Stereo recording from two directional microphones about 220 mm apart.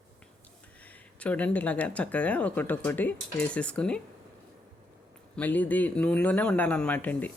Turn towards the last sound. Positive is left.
turn(degrees=5)  # may be behind; listen again after turning